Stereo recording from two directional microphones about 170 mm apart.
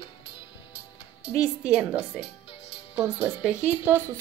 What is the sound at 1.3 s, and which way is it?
Speech, 20° left (ahead or behind).